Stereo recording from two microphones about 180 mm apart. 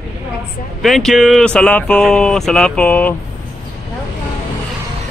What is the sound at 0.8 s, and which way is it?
Speech, centre (ahead or behind).